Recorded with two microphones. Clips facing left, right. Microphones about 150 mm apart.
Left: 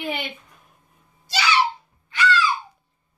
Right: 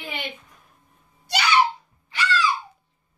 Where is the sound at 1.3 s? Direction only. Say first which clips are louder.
Even; 55° right (ahead or behind).